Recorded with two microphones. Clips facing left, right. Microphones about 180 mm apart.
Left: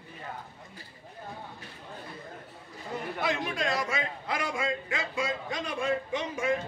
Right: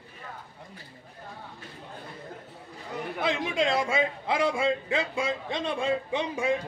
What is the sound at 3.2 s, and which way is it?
A man's voice, 25° right (ahead or behind).